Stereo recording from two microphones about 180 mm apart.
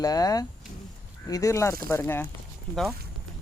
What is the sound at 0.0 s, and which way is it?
Speech, 20° left (ahead or behind).